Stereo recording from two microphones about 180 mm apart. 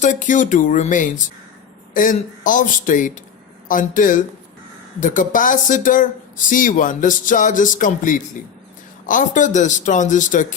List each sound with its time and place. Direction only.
0.0 s speech: 45° left (ahead or behind)